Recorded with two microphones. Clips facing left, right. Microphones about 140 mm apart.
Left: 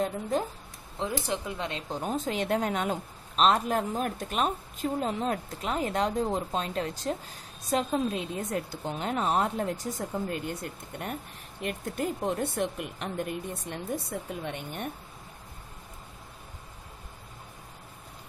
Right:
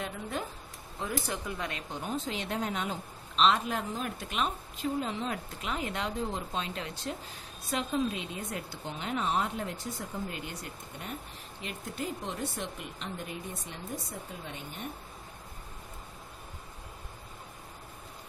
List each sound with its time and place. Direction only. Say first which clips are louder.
0.0 s speech: left 7 dB; 40° left (ahead or behind)
0.9 s speech: left 4 dB; 25° left (ahead or behind); by 14.4 s 65° left (ahead or behind)